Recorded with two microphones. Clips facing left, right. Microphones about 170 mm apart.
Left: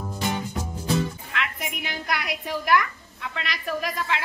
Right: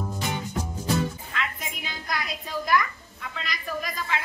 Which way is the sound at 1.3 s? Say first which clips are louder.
Left 2 dB; 75° left (ahead or behind).